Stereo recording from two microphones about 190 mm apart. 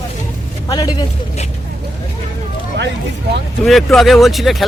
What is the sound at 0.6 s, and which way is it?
Speech, 20° left (ahead or behind).